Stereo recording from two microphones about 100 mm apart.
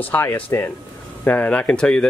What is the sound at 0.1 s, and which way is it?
Speech, 20° left (ahead or behind).